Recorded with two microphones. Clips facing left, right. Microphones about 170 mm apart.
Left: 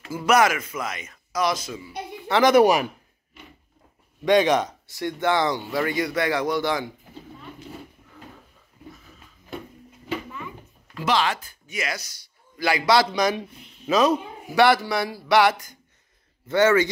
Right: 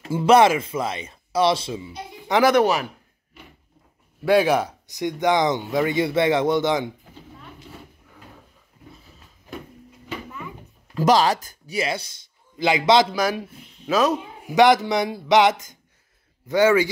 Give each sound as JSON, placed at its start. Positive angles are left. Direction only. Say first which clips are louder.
{"t": 0.0, "sound": "speech", "louder": "right 4 dB", "side_deg": -30}
{"t": 2.5, "sound": "speech", "louder": "left 2 dB", "side_deg": 15}
{"t": 4.2, "sound": "speech", "louder": "right 1 dB", "side_deg": -5}
{"t": 11.0, "sound": "speech", "louder": "right 6 dB", "side_deg": -40}
{"t": 13.1, "sound": "a man's voice", "louder": "even", "side_deg": -5}
{"t": 14.5, "sound": "a man's voice", "louder": "right 3 dB", "side_deg": -15}